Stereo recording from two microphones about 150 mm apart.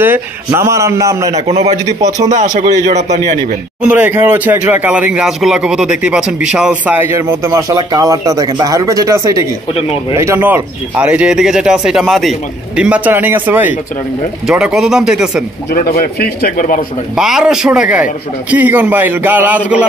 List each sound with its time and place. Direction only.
0.6 s a man's voice: 20° right (ahead or behind)
1.3 s a man's voice: 45° right (ahead or behind)
3.8 s speech: 10° right (ahead or behind)
15.7 s speech: 80° left; by 16.8 s 65° left (ahead or behind)
17.1 s speech: 5° right (ahead or behind)